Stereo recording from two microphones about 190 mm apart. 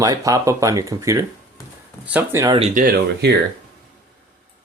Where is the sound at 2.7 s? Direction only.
55° right (ahead or behind).